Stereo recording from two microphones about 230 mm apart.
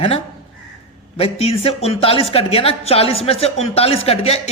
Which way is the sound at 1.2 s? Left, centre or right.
Left.